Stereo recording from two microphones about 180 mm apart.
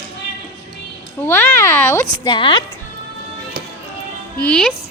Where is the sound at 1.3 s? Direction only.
15° left (ahead or behind).